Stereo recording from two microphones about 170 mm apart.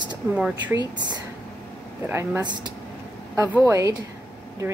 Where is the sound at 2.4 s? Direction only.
25° right (ahead or behind).